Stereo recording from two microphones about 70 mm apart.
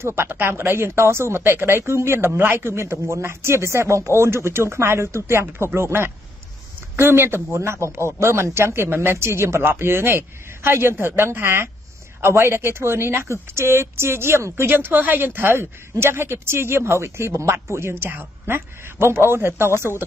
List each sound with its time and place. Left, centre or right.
0.0 s speech: right